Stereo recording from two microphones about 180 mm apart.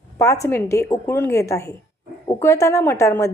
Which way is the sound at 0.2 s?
15° left (ahead or behind).